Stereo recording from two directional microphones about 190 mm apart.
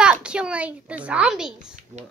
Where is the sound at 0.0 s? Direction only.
5° right (ahead or behind).